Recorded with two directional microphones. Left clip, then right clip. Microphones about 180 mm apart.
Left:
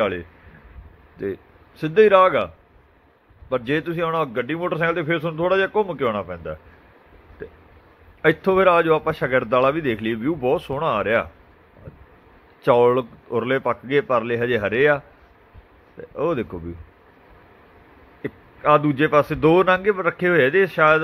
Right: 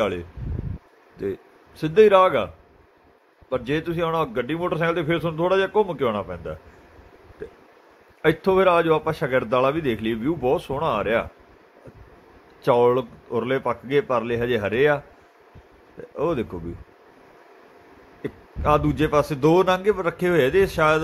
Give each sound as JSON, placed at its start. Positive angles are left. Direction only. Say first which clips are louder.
{"t": 1.1, "sound": "a man's voice", "louder": "left 1 dB", "side_deg": 0}
{"t": 8.2, "sound": "a man's voice", "louder": "left 2 dB", "side_deg": 0}
{"t": 12.6, "sound": "a man's voice", "louder": "left 2 dB", "side_deg": 5}
{"t": 16.2, "sound": "a man's voice", "louder": "left 1 dB", "side_deg": 0}
{"t": 18.2, "sound": "a man's voice", "louder": "left 3 dB", "side_deg": 5}